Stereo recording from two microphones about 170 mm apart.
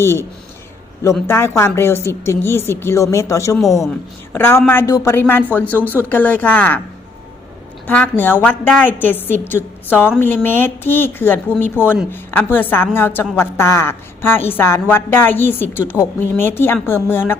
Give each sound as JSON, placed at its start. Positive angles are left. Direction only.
{"t": 0.0, "sound": "a woman's voice", "side_deg": 15}
{"t": 1.3, "sound": "a woman's voice", "side_deg": 15}
{"t": 7.9, "sound": "a woman's voice", "side_deg": 10}